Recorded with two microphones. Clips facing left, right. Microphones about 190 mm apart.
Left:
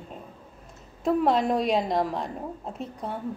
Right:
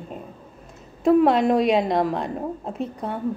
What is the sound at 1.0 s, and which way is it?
A woman's voice, 65° right (ahead or behind).